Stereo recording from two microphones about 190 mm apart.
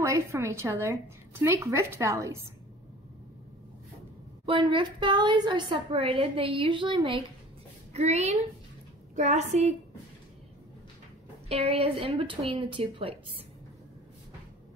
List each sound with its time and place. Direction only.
0.0 s a woman's voice: 15° right (ahead or behind)
4.5 s a woman's voice: 25° right (ahead or behind)
11.4 s a woman's voice: 30° right (ahead or behind)